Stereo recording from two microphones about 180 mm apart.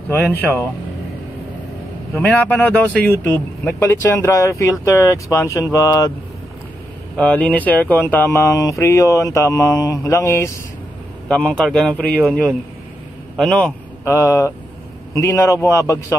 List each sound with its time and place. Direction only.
0.1 s speech: 10° left (ahead or behind)
2.1 s speech: 10° left (ahead or behind)
7.2 s speech: 5° left (ahead or behind)
14.0 s speech: 15° left (ahead or behind)